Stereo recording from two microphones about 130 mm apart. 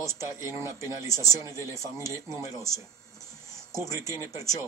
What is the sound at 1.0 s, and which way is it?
Speech, 25° left (ahead or behind).